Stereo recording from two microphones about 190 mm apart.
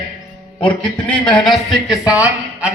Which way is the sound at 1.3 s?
Centre (ahead or behind).